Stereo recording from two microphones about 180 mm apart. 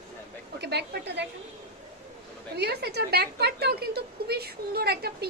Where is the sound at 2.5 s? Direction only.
65° right (ahead or behind).